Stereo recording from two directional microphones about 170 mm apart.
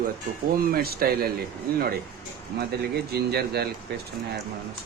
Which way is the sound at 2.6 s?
70° right (ahead or behind).